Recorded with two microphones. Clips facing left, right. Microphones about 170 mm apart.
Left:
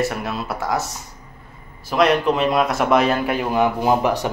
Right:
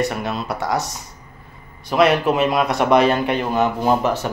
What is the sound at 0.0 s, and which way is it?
Speech, centre (ahead or behind).